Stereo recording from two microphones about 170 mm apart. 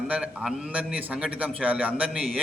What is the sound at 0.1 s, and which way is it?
A man's voice, 5° right (ahead or behind).